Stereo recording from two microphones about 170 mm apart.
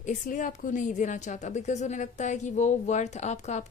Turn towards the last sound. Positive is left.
turn(degrees=45)  # may be behind; listen again after turning